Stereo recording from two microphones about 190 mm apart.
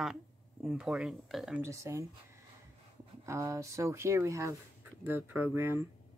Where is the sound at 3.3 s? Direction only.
15° right (ahead or behind).